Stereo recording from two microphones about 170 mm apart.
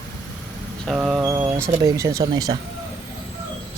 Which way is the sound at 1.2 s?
15° right (ahead or behind).